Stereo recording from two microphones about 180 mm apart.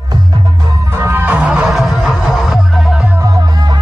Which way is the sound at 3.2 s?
20° right (ahead or behind).